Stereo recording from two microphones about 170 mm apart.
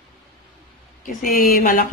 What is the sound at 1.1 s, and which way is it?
Speech, 50° left (ahead or behind).